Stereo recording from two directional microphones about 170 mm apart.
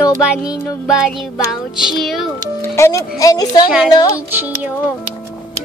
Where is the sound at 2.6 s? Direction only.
15° left (ahead or behind).